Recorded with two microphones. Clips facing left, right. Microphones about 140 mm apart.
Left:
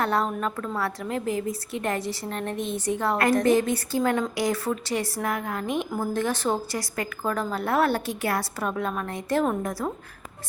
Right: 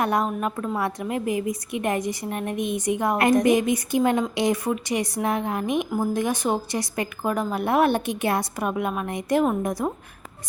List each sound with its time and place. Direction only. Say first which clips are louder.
0.0 s a woman's voice: right 2 dB; 15° right (ahead or behind)